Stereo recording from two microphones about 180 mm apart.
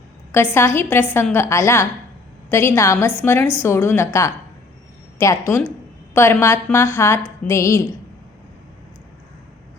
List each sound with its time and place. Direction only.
0.3 s a woman's voice: 15° left (ahead or behind)